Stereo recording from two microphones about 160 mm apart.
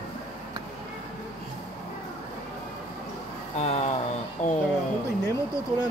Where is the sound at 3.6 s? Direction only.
45° left (ahead or behind).